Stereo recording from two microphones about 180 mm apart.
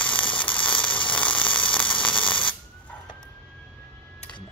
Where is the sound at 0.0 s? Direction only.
10° left (ahead or behind).